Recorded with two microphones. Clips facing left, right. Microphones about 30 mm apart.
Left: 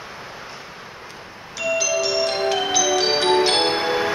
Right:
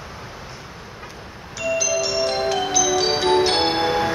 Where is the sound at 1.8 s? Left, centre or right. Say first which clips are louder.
Left 1 dB; centre.